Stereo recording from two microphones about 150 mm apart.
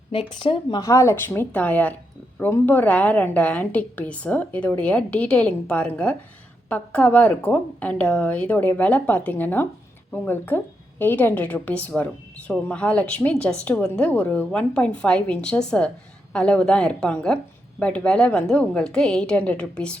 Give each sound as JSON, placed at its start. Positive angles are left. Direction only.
{"t": 0.1, "sound": "speech", "side_deg": 35}
{"t": 0.8, "sound": "a woman's voice", "side_deg": 20}